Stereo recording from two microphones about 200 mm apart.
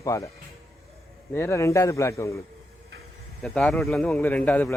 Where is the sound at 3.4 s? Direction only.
Centre (ahead or behind).